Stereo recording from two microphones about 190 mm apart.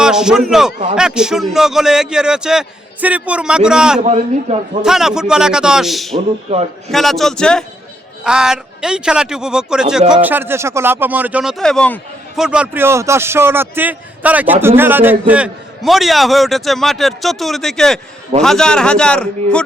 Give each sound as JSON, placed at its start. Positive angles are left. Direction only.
{"t": 0.0, "sound": "a man's voice", "side_deg": -5}
{"t": 4.0, "sound": "a man's voice", "side_deg": -35}
{"t": 4.8, "sound": "a man's voice", "side_deg": -5}
{"t": 6.1, "sound": "a man's voice", "side_deg": -35}
{"t": 6.9, "sound": "a man's voice", "side_deg": 0}